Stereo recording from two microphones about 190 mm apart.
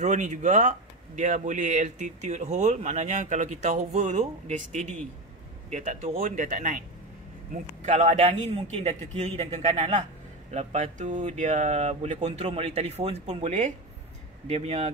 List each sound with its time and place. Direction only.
0.0 s speech: 40° right (ahead or behind)
7.8 s speech: 40° right (ahead or behind)